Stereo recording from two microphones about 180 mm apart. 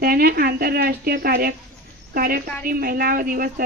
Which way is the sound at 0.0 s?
55° right (ahead or behind).